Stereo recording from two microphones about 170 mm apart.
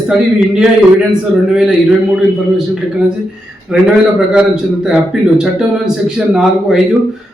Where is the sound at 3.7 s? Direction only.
5° right (ahead or behind).